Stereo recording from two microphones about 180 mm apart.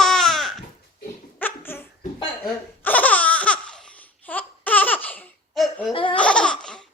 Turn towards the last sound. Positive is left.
turn(degrees=5)  # may be behind; listen again after turning